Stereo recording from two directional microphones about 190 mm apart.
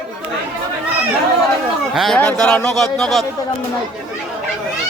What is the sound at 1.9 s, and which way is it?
A man's voice, centre (ahead or behind).